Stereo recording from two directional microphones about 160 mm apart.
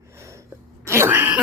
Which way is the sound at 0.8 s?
15° right (ahead or behind).